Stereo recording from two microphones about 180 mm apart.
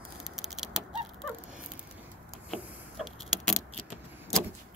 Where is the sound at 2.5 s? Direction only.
Centre (ahead or behind).